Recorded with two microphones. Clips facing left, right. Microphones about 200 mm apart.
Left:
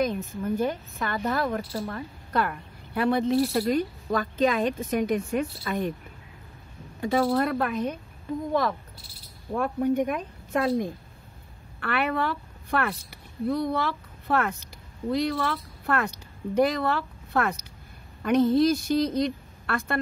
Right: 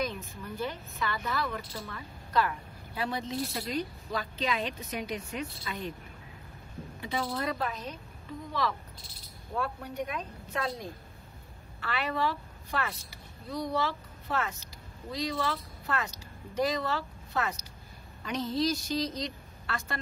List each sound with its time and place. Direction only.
0.0 s speech: 50° left (ahead or behind)
7.0 s a woman's voice: 45° left (ahead or behind)